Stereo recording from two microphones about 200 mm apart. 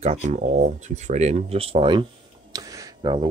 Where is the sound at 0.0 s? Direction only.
35° right (ahead or behind).